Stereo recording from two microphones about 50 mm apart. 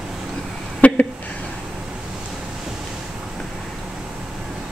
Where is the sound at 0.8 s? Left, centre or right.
Left.